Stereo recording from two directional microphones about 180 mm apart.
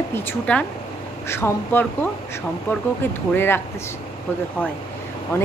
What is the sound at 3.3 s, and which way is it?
Speech, 10° left (ahead or behind).